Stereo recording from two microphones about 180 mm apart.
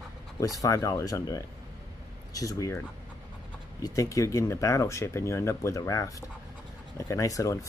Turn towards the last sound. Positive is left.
turn(degrees=20)  # may be behind; listen again after turning